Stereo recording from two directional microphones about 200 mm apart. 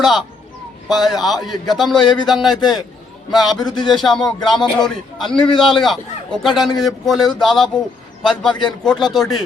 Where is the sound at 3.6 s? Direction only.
20° left (ahead or behind).